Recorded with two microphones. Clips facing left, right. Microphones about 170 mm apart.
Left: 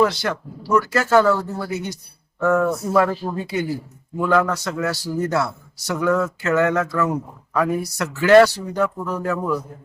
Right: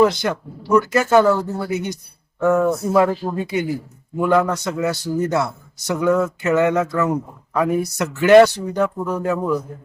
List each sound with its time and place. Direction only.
0.0 s a man's voice: 20° right (ahead or behind)